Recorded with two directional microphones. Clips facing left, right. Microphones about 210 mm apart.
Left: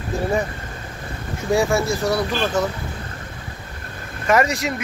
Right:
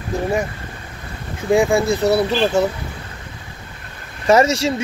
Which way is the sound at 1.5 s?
15° right (ahead or behind).